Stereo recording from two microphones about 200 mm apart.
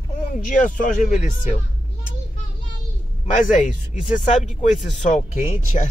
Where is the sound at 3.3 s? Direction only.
40° left (ahead or behind).